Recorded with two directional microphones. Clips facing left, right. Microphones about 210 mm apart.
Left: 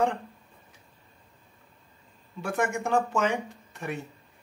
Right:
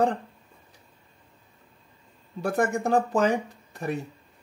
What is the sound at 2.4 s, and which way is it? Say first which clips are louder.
Speech: right 4 dB; 35° right (ahead or behind).